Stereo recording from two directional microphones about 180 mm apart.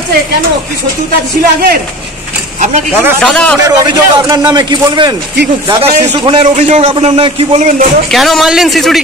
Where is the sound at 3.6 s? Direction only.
20° right (ahead or behind).